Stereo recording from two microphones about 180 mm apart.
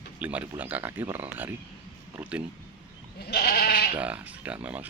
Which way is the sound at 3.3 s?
60° left (ahead or behind).